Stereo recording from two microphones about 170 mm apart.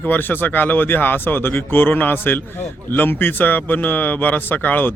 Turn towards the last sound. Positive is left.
turn(degrees=10)  # may be behind; listen again after turning